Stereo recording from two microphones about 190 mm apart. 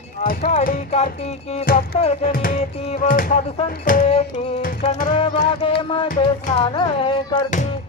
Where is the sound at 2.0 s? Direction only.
30° left (ahead or behind).